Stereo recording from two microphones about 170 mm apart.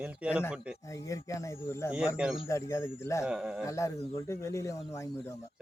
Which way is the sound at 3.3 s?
5° right (ahead or behind).